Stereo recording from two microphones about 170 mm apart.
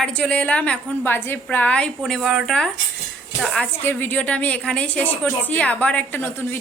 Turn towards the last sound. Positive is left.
turn(degrees=15)  # may be behind; listen again after turning